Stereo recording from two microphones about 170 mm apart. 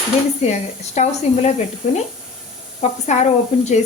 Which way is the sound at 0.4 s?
40° left (ahead or behind).